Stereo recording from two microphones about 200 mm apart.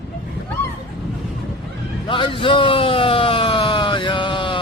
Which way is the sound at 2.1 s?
25° left (ahead or behind).